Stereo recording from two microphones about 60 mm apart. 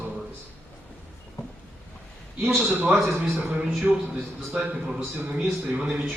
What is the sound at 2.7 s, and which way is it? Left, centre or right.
A man's voice, right.